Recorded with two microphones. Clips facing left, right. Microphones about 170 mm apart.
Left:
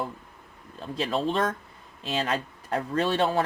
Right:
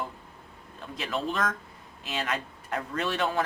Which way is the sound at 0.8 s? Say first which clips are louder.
Left 5 dB; 30° left (ahead or behind).